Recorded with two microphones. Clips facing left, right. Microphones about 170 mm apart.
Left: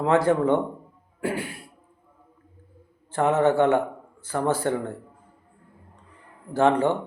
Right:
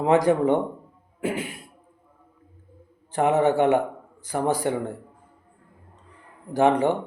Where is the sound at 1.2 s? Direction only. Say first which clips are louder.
Right 1 dB; 20° right (ahead or behind).